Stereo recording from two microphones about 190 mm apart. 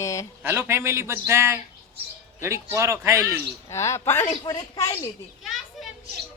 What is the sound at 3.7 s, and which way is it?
Speech, 15° left (ahead or behind).